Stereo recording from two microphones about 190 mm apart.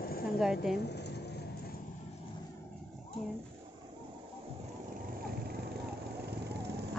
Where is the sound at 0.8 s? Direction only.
60° left (ahead or behind).